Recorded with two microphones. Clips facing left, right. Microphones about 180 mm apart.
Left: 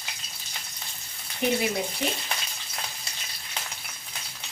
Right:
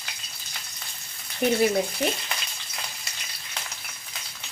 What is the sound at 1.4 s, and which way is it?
Speech, 40° right (ahead or behind).